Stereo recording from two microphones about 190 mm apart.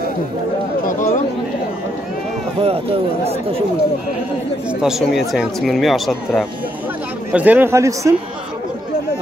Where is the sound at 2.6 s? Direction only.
30° right (ahead or behind).